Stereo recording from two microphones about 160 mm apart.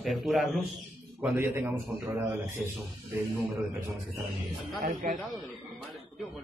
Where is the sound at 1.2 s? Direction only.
15° right (ahead or behind).